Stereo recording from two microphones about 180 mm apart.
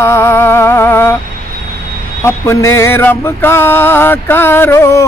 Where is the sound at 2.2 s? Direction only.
15° left (ahead or behind).